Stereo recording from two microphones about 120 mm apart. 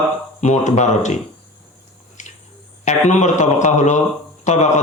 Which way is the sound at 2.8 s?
80° left.